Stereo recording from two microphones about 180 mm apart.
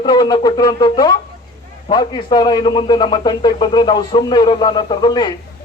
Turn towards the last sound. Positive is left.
turn(degrees=25)  # may be behind; listen again after turning